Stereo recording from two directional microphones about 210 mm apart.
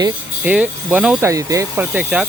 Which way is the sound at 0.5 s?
5° right (ahead or behind).